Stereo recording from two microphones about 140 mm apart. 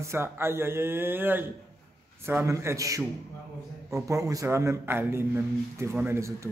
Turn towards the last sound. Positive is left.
turn(degrees=-20)  # may be behind; listen again after turning